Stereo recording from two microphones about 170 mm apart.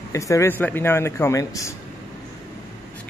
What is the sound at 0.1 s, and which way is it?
A man's voice, 20° left (ahead or behind).